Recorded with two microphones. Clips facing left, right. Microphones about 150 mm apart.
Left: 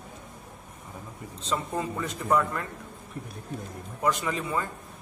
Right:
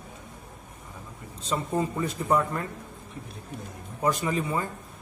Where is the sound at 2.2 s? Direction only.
25° right (ahead or behind).